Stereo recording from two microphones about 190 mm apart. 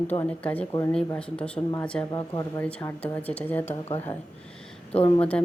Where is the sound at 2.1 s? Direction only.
20° left (ahead or behind).